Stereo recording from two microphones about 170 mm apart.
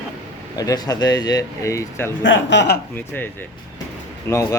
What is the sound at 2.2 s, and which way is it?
Speech, 90° left.